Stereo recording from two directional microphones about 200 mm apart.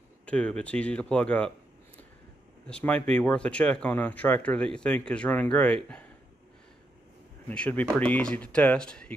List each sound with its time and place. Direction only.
0.2 s speech: 5° left (ahead or behind)
2.6 s speech: 5° left (ahead or behind)
7.4 s speech: 5° left (ahead or behind)